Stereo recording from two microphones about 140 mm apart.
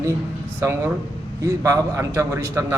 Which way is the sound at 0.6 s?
15° right (ahead or behind).